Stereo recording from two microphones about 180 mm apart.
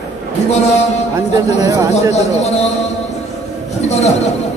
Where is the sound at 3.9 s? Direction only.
40° left (ahead or behind).